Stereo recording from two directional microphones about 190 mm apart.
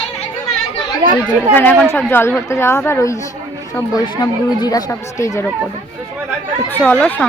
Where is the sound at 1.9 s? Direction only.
10° left (ahead or behind).